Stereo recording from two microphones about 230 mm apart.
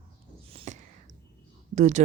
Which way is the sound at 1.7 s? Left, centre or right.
Right.